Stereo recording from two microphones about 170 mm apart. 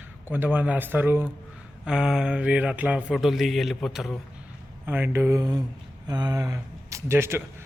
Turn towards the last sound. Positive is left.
turn(degrees=-15)  # may be behind; listen again after turning